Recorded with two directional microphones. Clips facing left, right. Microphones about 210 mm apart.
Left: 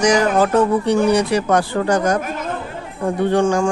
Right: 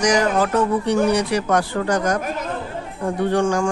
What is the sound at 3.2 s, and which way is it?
Speech, 25° left (ahead or behind).